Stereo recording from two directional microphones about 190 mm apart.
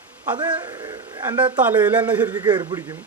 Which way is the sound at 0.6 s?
20° right (ahead or behind).